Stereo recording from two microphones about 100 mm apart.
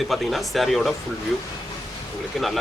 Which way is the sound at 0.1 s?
Centre (ahead or behind).